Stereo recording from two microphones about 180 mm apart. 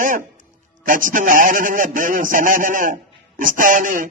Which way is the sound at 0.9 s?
45° right (ahead or behind).